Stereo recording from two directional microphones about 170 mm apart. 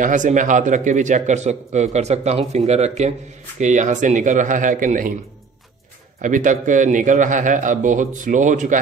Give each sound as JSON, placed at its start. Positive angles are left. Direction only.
{"t": 0.0, "sound": "speech", "side_deg": -50}
{"t": 6.2, "sound": "speech", "side_deg": -50}